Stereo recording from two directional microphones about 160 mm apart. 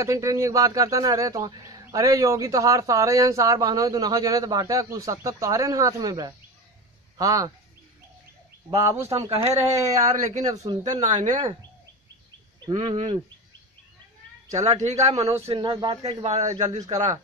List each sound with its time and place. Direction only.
0.0 s a man's voice: 20° right (ahead or behind)
8.6 s a man's voice: 20° right (ahead or behind)
10.1 s speech: 50° right (ahead or behind)
10.4 s a man's voice: 25° right (ahead or behind)
10.8 s speech: 45° right (ahead or behind)
12.9 s speech: 35° right (ahead or behind)
14.5 s speech: 45° right (ahead or behind)
15.5 s speech: 30° right (ahead or behind)